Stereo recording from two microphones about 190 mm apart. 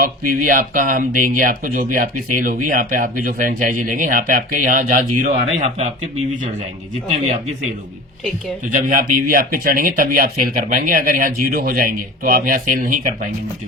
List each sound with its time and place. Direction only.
0.0 s speech: 50° right (ahead or behind)
8.7 s speech: 45° right (ahead or behind)